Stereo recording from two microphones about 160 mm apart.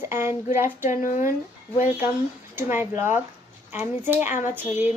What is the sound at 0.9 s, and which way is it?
Speech, 50° left (ahead or behind).